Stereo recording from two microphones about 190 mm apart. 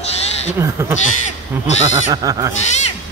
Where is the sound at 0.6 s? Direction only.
15° right (ahead or behind).